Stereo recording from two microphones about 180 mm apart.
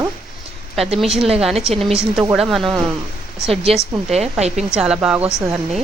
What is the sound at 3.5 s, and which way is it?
Speech, 35° right (ahead or behind).